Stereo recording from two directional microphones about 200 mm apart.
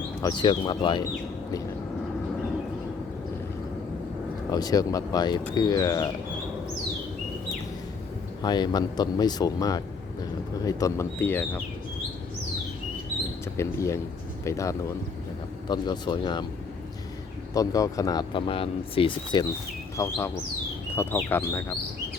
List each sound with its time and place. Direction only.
0.2 s speech: 20° left (ahead or behind)
4.5 s speech: 20° left (ahead or behind)
8.4 s speech: 20° left (ahead or behind)
13.6 s speech: 15° left (ahead or behind)
17.5 s speech: 15° left (ahead or behind)
20.9 s bird: 10° left (ahead or behind)
21.2 s speech: 10° left (ahead or behind)